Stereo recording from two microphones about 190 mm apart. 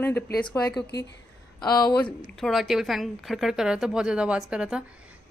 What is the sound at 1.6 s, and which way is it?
Speech, 20° left (ahead or behind).